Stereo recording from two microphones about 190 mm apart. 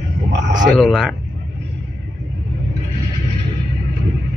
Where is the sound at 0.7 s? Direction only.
Centre (ahead or behind).